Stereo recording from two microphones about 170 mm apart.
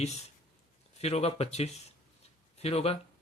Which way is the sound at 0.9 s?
35° left (ahead or behind).